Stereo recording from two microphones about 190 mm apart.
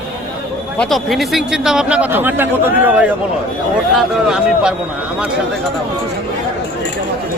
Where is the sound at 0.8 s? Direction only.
Centre (ahead or behind).